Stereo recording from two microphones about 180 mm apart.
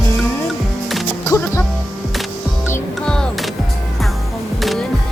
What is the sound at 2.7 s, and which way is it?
Music, 5° left (ahead or behind).